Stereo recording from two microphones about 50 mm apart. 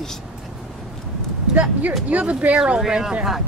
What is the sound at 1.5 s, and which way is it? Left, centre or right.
Speech, right.